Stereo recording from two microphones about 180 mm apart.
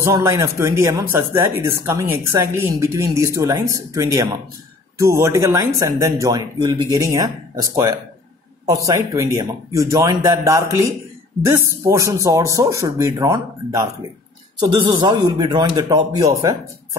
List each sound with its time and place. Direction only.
0.0 s speech: 15° right (ahead or behind)